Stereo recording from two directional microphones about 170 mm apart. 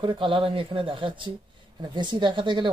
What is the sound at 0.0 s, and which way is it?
Speech, 30° right (ahead or behind).